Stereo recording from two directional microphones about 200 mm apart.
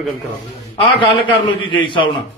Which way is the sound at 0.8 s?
25° left (ahead or behind).